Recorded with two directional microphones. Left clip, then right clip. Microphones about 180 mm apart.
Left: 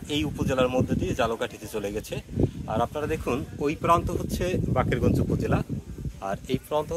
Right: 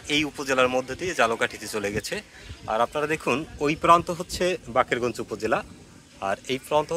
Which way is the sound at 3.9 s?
30° right (ahead or behind).